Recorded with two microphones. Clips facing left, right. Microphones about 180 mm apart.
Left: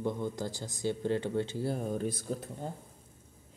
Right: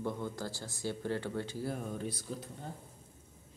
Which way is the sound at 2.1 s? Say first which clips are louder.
Left 5 dB; 50° left (ahead or behind).